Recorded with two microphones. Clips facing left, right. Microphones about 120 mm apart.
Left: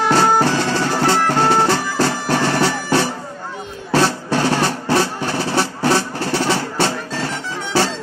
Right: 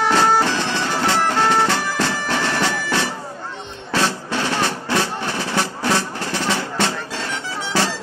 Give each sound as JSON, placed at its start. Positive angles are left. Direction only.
{"t": 0.4, "sound": "music", "side_deg": 40}